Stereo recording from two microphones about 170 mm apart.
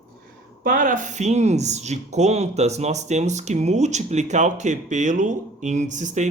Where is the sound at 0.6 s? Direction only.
50° right (ahead or behind).